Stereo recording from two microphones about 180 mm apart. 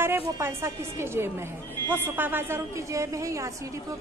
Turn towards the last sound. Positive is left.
turn(degrees=-15)  # may be behind; listen again after turning